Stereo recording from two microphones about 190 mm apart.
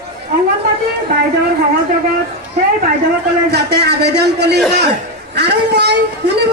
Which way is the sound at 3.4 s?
60° right (ahead or behind).